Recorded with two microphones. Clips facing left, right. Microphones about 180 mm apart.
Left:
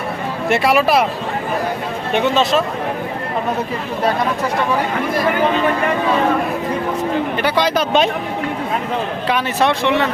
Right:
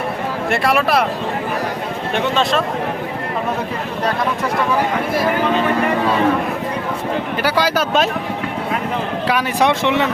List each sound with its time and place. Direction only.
0.4 s speech: centre (ahead or behind)
2.1 s speech: centre (ahead or behind)
7.4 s speech: 5° right (ahead or behind)
9.2 s speech: 10° right (ahead or behind)